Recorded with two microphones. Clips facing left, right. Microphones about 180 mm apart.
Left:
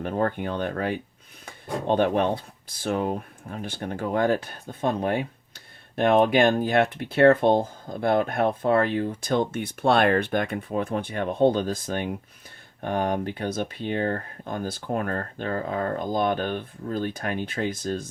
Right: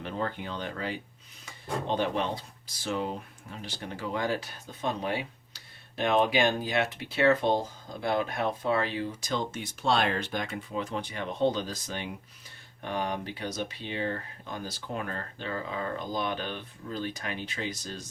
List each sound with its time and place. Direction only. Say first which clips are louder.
0.0 s speech: left 8 dB; 50° left (ahead or behind)